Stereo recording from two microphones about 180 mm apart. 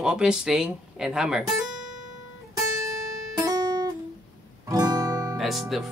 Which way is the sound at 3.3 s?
20° right (ahead or behind).